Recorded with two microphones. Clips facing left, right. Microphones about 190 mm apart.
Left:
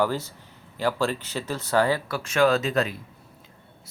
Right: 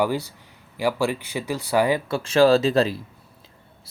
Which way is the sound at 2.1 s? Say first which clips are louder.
Right 7 dB; 30° right (ahead or behind).